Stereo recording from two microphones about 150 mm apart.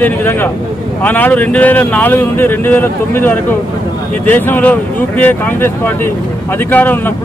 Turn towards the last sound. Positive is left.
turn(degrees=15)  # may be behind; listen again after turning